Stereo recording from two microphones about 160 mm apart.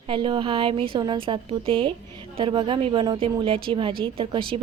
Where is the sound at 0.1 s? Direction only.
30° right (ahead or behind).